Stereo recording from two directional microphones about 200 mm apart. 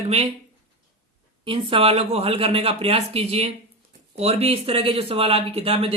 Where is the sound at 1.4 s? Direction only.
25° right (ahead or behind).